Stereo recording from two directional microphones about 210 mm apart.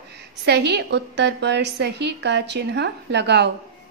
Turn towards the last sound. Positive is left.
turn(degrees=-55)  # may be behind; listen again after turning